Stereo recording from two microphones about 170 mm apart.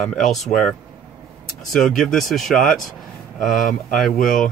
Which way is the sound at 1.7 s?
5° left (ahead or behind).